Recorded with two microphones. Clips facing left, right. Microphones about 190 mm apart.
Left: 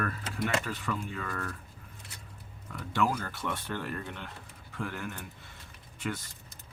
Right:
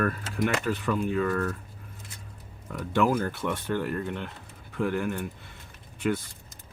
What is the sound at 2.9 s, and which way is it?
Speech, 55° right (ahead or behind).